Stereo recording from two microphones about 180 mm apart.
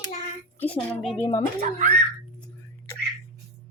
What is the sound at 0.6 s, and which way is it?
Speech, 5° left (ahead or behind).